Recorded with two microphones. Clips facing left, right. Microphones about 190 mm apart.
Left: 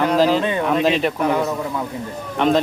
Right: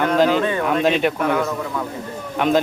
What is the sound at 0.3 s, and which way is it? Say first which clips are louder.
Speech: even; 20° left (ahead or behind).